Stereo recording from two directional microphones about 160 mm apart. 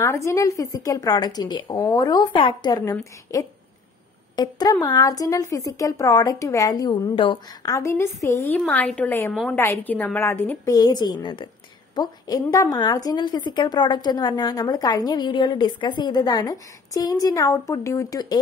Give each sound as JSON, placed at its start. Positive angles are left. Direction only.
{"t": 0.0, "sound": "a woman's voice", "side_deg": 20}
{"t": 9.3, "sound": "a woman's voice", "side_deg": 0}
{"t": 9.6, "sound": "a woman's voice", "side_deg": 10}
{"t": 10.7, "sound": "a woman's voice", "side_deg": 25}